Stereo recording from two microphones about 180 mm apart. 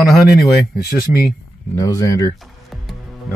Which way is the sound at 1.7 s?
20° left (ahead or behind).